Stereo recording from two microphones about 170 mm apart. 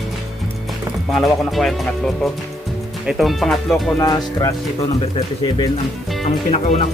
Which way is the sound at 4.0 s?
20° left (ahead or behind).